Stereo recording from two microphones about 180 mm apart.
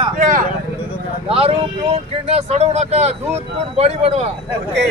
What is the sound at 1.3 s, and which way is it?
Speech, 30° right (ahead or behind).